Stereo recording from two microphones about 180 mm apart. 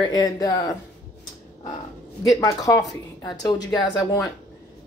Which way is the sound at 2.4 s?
20° left (ahead or behind).